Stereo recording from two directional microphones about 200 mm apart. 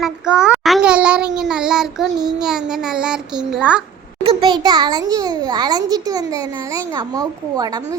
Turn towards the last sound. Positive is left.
turn(degrees=-20)  # may be behind; listen again after turning